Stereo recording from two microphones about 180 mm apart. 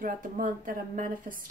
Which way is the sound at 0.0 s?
50° right (ahead or behind).